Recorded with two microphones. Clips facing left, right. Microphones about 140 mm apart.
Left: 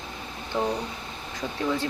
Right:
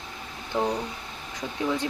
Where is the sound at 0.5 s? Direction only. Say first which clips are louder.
Right 1 dB; 15° right (ahead or behind).